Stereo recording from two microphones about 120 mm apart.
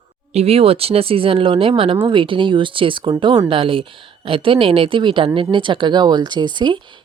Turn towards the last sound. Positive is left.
turn(degrees=-40)  # may be behind; listen again after turning